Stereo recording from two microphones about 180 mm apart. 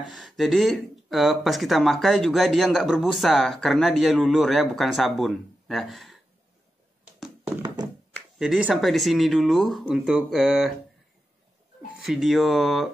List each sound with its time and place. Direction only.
0.1 s speech: centre (ahead or behind)
7.6 s thunk: 25° right (ahead or behind)
8.1 s speech: centre (ahead or behind)
12.0 s speech: centre (ahead or behind)